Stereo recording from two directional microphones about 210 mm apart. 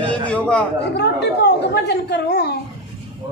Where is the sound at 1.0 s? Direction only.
50° left (ahead or behind).